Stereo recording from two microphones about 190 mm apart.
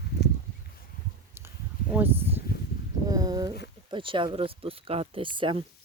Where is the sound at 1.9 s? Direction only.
10° right (ahead or behind).